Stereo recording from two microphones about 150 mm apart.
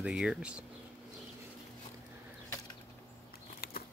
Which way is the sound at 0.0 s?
5° right (ahead or behind).